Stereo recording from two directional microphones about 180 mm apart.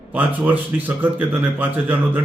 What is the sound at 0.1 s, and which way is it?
Speech, 10° right (ahead or behind).